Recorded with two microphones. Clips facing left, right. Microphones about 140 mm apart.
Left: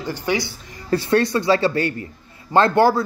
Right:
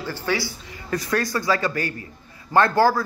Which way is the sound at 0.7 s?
30° left (ahead or behind).